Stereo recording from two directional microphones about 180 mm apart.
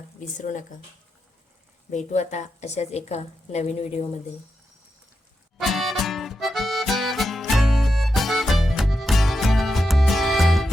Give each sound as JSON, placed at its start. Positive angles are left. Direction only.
{"t": 0.3, "sound": "speech", "side_deg": 45}
{"t": 1.9, "sound": "a woman's voice", "side_deg": 40}
{"t": 5.5, "sound": "music", "side_deg": 0}